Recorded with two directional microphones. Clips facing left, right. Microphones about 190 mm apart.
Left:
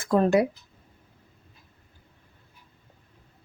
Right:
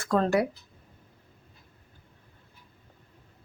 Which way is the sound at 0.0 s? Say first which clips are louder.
Left 3 dB; 15° left (ahead or behind).